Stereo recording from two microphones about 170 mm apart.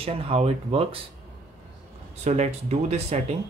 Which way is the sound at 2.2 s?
40° right (ahead or behind).